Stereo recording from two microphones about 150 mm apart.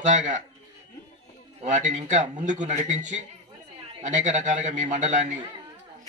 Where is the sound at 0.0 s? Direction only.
55° right (ahead or behind).